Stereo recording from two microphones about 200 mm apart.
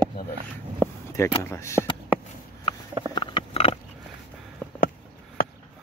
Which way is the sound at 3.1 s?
25° left (ahead or behind).